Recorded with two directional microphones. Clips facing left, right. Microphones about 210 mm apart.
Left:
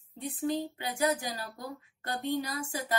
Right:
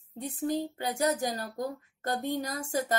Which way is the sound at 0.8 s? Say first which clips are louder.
Right 2 dB; 40° right (ahead or behind).